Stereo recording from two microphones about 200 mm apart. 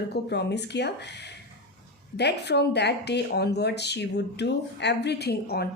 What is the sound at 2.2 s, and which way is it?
Speech, 55° left (ahead or behind).